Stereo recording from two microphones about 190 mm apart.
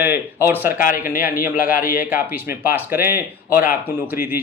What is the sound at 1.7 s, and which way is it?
Speech, 50° left (ahead or behind).